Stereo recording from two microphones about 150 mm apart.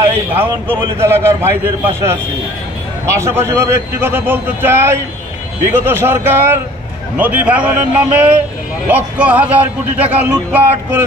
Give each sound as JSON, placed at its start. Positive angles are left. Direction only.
{"t": 0.3, "sound": "a man's voice", "side_deg": -15}